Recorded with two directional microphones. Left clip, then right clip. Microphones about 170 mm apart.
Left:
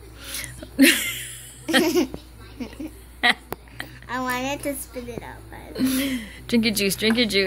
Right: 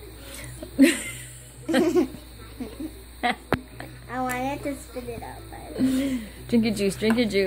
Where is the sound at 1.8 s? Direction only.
25° left (ahead or behind).